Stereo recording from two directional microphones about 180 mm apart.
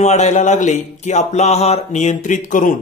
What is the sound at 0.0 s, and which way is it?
Speech, 40° left (ahead or behind).